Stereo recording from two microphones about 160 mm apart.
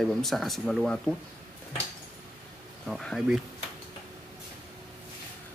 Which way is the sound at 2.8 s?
Centre (ahead or behind).